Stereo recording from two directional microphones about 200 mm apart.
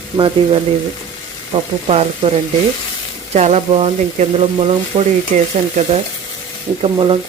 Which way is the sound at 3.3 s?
35° right (ahead or behind).